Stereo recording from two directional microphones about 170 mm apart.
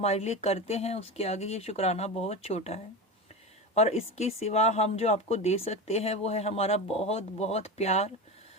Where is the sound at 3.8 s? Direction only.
40° left (ahead or behind).